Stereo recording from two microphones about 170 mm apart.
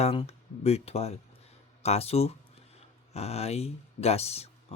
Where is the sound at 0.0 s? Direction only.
35° left (ahead or behind).